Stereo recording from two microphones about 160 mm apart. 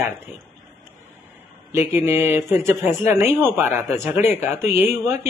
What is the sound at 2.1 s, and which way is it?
A man's voice, 15° right (ahead or behind).